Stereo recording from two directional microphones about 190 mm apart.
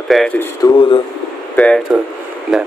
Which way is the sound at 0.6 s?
25° left (ahead or behind).